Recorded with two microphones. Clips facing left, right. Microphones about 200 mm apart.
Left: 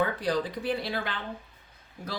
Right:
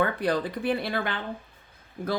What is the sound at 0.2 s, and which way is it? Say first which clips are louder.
Speech: right 2 dB; 55° right (ahead or behind).